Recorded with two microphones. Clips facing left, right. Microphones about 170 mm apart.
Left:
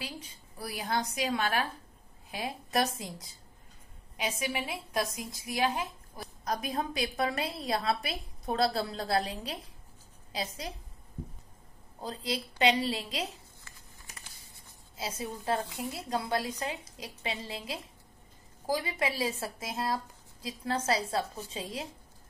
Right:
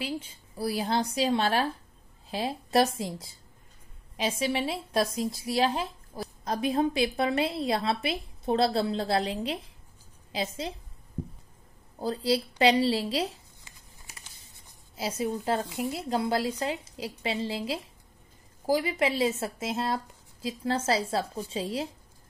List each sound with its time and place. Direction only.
0.6 s a woman's voice: 30° right (ahead or behind)
12.0 s a woman's voice: 30° right (ahead or behind)
15.0 s a woman's voice: 25° right (ahead or behind)